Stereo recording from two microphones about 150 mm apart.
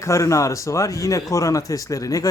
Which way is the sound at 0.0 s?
20° left (ahead or behind).